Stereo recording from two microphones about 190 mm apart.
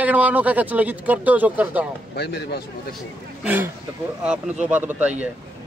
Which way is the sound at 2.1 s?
60° left (ahead or behind).